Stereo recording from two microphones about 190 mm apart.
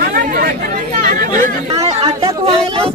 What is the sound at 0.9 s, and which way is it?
Chatter, 45° right (ahead or behind).